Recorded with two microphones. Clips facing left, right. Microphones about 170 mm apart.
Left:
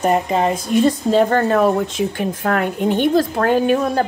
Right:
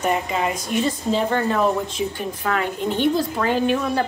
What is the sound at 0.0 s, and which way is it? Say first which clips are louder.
Speech: left 5 dB; 35° left (ahead or behind).